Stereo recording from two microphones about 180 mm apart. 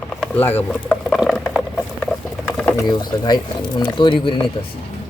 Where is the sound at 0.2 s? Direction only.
10° left (ahead or behind).